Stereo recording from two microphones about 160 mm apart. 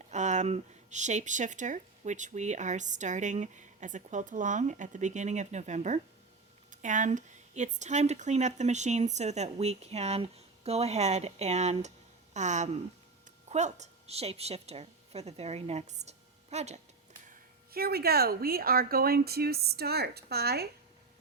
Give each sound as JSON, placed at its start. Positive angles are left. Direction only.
{"t": 0.1, "sound": "a woman's voice", "side_deg": -45}
{"t": 17.2, "sound": "speech", "side_deg": -70}